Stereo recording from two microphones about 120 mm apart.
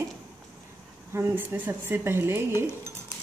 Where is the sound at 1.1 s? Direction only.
20° right (ahead or behind).